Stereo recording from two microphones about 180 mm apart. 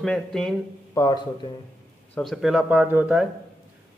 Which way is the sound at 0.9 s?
25° left (ahead or behind).